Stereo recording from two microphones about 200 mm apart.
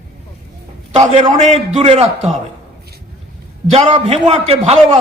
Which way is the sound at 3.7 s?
30° right (ahead or behind).